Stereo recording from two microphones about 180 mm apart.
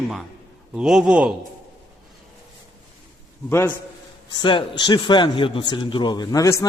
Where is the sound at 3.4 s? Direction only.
15° left (ahead or behind).